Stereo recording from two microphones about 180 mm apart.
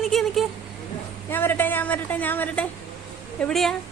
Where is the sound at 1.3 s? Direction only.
10° left (ahead or behind).